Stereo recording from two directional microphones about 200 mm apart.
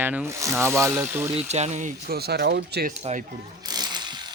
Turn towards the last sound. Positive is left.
turn(degrees=-20)  # may be behind; listen again after turning